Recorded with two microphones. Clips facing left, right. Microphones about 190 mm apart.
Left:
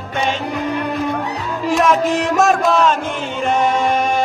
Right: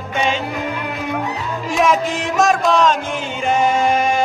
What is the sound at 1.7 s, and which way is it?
Music, centre (ahead or behind).